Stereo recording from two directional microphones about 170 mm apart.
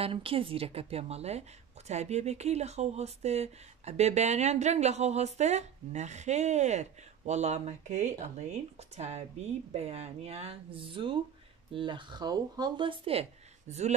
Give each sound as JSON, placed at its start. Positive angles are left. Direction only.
{"t": 0.0, "sound": "speech", "side_deg": -35}